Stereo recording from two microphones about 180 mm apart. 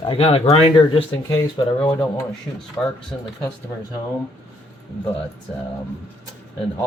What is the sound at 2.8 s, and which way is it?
Speech, 10° left (ahead or behind).